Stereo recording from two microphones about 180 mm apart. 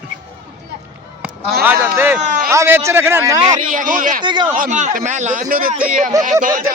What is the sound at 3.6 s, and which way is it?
Speech, 45° right (ahead or behind).